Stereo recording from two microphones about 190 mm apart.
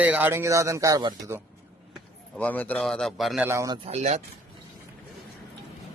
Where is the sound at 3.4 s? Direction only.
15° right (ahead or behind).